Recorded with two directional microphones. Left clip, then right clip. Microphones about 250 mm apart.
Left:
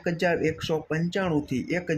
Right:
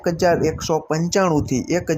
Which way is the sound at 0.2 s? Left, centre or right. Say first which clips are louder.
Right 7 dB; centre.